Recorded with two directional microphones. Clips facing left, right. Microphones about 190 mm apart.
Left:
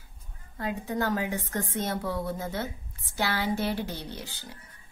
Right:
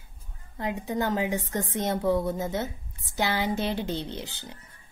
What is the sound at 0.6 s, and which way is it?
A woman's voice, 20° right (ahead or behind).